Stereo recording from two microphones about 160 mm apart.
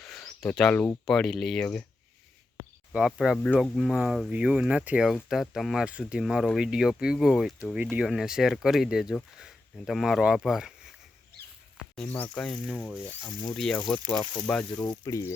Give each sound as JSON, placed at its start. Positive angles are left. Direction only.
{"t": 0.0, "sound": "speech", "side_deg": 5}
{"t": 3.1, "sound": "speech", "side_deg": 0}
{"t": 11.9, "sound": "speech", "side_deg": 10}
{"t": 14.8, "sound": "speech", "side_deg": 20}